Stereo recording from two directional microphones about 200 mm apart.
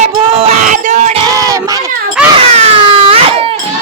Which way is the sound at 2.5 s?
30° right (ahead or behind).